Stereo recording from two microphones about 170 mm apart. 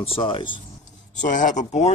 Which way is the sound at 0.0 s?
30° left (ahead or behind).